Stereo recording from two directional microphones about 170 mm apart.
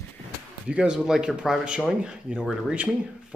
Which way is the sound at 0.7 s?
5° right (ahead or behind).